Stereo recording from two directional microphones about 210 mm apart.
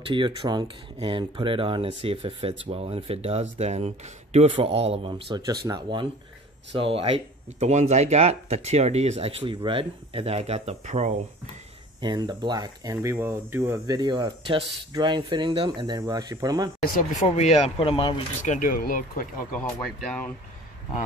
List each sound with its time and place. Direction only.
0.1 s speech: 25° right (ahead or behind)
12.0 s speech: 20° right (ahead or behind)
16.8 s speech: 40° left (ahead or behind)